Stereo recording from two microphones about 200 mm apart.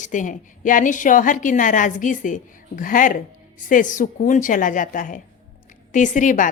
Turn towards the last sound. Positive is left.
turn(degrees=40)  # may be behind; listen again after turning